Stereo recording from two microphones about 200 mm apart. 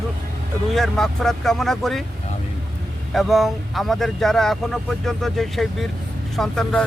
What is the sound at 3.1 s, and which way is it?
Speech, centre (ahead or behind).